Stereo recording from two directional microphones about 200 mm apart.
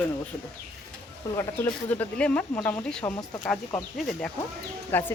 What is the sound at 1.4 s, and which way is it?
Speech, 10° left (ahead or behind).